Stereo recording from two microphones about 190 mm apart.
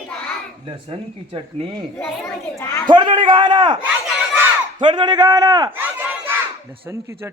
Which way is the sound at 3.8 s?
10° right (ahead or behind).